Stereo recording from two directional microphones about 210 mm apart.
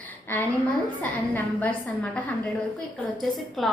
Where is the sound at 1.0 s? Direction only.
10° left (ahead or behind).